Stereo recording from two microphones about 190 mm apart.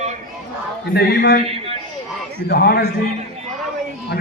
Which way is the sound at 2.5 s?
60° left (ahead or behind).